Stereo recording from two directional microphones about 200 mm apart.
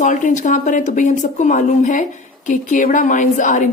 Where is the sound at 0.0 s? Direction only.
40° left (ahead or behind).